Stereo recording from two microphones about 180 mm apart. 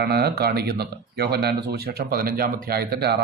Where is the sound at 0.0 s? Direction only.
65° right (ahead or behind).